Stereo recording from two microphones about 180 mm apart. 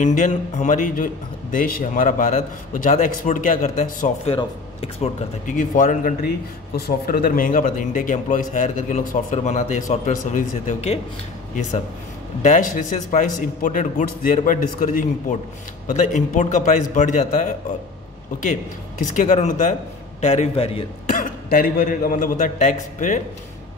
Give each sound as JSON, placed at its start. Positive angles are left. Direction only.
{"t": 0.0, "sound": "a man's voice", "side_deg": 40}
{"t": 12.4, "sound": "a man's voice", "side_deg": 45}
{"t": 19.1, "sound": "a man's voice", "side_deg": 45}
{"t": 21.1, "sound": "a man's voice", "side_deg": 50}